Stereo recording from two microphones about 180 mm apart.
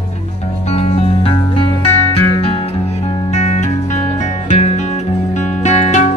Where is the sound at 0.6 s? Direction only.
35° left (ahead or behind).